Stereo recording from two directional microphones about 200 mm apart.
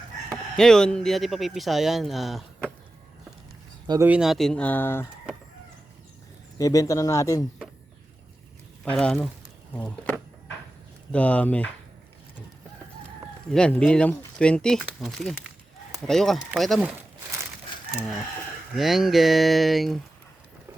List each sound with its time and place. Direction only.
0.5 s speech: 5° left (ahead or behind)
3.8 s speech: 15° right (ahead or behind); by 5.0 s 10° left (ahead or behind)
6.6 s speech: 15° left (ahead or behind)
8.8 s speech: 5° left (ahead or behind)
13.5 s speech: 5° left (ahead or behind)
18.8 s speech: centre (ahead or behind)